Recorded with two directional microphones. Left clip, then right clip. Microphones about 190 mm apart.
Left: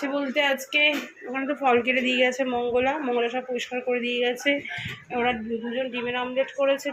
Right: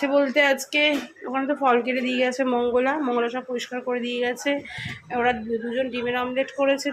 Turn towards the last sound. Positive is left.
turn(degrees=-10)  # may be behind; listen again after turning